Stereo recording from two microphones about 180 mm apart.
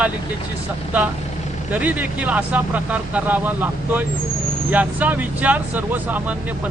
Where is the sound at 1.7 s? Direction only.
10° right (ahead or behind).